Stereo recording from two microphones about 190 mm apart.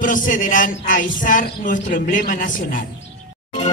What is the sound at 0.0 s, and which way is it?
Speech, 45° left (ahead or behind).